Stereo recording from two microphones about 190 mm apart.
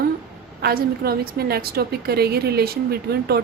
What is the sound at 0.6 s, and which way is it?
A woman's voice, 55° right (ahead or behind).